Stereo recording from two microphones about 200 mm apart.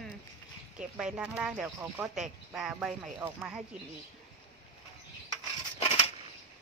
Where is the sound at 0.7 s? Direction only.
5° right (ahead or behind).